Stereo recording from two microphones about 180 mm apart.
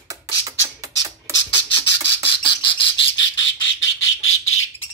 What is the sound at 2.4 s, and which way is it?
Bird, 30° left (ahead or behind).